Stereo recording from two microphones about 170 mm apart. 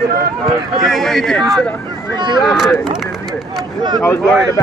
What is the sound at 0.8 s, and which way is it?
Speech, centre (ahead or behind).